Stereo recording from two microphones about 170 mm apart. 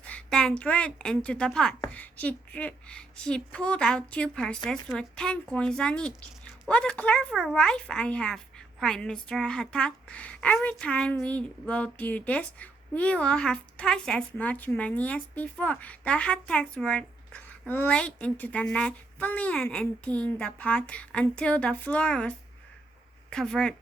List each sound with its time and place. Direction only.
0.0 s speech: 5° left (ahead or behind)